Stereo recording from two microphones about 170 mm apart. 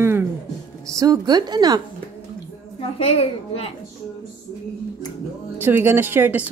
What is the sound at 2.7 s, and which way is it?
Speech, 35° left (ahead or behind).